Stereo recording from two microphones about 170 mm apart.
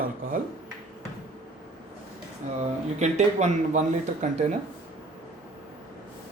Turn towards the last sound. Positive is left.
turn(degrees=-45)  # may be behind; listen again after turning